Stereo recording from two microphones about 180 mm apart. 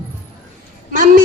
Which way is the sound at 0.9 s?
50° right (ahead or behind).